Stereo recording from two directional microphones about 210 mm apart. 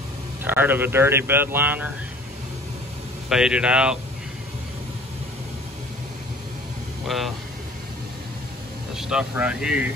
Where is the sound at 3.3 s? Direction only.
5° right (ahead or behind).